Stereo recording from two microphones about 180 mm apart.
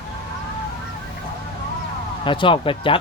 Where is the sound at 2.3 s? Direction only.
25° left (ahead or behind).